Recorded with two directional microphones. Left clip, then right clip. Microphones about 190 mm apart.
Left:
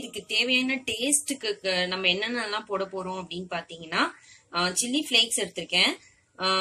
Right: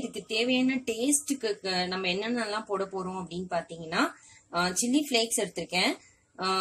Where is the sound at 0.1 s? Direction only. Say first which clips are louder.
Left 4 dB; 25° right (ahead or behind).